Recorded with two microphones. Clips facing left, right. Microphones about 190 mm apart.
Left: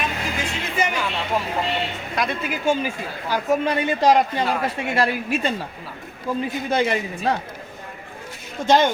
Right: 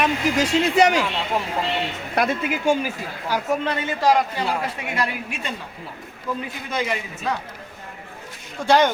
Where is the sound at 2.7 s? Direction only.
10° right (ahead or behind).